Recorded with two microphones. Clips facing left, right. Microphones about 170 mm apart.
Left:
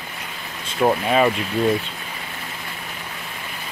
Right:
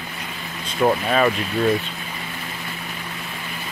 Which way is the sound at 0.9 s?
15° left (ahead or behind).